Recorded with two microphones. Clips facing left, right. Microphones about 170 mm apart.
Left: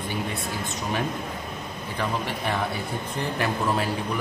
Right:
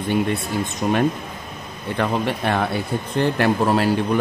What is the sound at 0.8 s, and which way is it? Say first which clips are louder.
A man's voice: right 9 dB; 75° right (ahead or behind).